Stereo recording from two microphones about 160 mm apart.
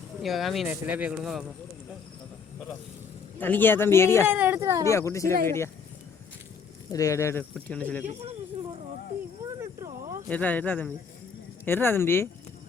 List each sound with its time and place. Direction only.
0.2 s speech: centre (ahead or behind)
3.3 s speech: 10° left (ahead or behind)
4.3 s speech: 10° right (ahead or behind)
4.9 s speech: 20° left (ahead or behind)
6.9 s speech: 20° left (ahead or behind)
8.0 s speech: 40° right (ahead or behind)
9.6 s a sound: 20° right (ahead or behind)
10.2 s speech: 10° left (ahead or behind)